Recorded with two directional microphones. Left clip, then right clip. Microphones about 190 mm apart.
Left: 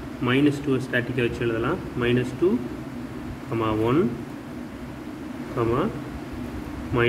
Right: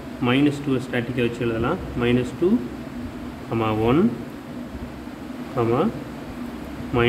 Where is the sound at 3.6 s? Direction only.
35° right (ahead or behind).